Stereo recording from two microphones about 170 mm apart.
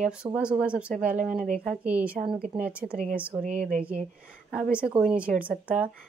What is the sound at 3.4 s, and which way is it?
Speech, 50° right (ahead or behind).